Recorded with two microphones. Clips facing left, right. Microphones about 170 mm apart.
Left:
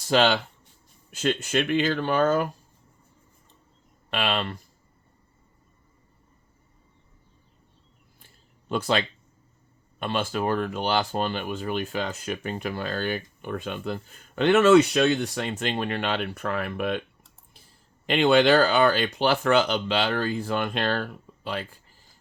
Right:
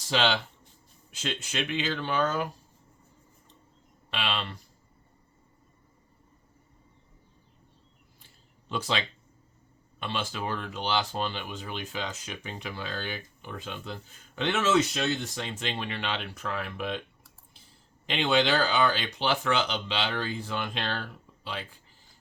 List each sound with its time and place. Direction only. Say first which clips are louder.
0.1 s speech: left 6 dB; 50° left (ahead or behind)
4.1 s speech: left 6 dB; 50° left (ahead or behind)
8.7 s speech: left 6 dB; 50° left (ahead or behind)
18.0 s speech: left 7 dB; 50° left (ahead or behind)